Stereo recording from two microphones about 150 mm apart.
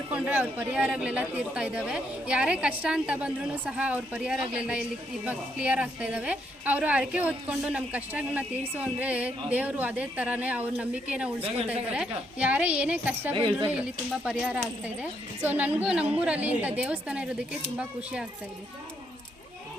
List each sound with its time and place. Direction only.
0.1 s a woman's voice: 10° right (ahead or behind)
11.3 s a woman's voice: 40° right (ahead or behind)
11.7 s a woman's voice: 10° right (ahead or behind)
13.3 s a woman's voice: 30° right (ahead or behind)
13.7 s a woman's voice: 5° right (ahead or behind)